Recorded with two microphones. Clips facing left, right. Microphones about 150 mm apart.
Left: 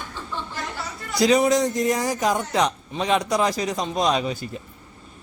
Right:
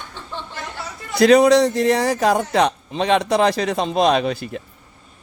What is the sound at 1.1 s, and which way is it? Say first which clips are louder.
A man's voice: right 6 dB; 60° right (ahead or behind).